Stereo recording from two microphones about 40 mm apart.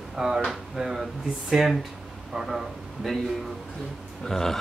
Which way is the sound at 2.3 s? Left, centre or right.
Centre.